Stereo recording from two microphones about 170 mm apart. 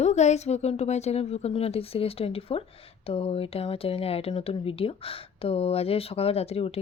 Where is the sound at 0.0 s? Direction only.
40° left (ahead or behind).